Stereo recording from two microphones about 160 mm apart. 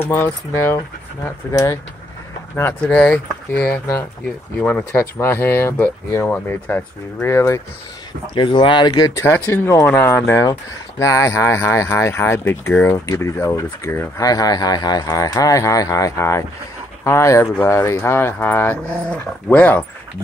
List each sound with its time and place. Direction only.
0.0 s speech: 15° left (ahead or behind)
2.5 s speech: 10° left (ahead or behind)
8.4 s speech: 30° left (ahead or behind); by 19.8 s 10° left (ahead or behind)